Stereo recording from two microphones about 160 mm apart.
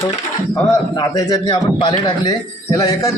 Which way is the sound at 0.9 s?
20° left (ahead or behind).